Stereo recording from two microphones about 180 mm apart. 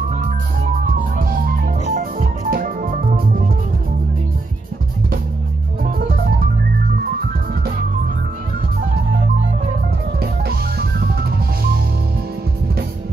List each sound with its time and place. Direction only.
1.1 s music: 50° right (ahead or behind)
10.4 s music: 60° right (ahead or behind)